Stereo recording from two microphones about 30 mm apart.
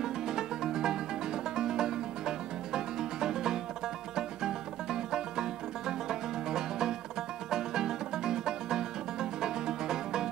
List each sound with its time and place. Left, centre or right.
0.0 s music: centre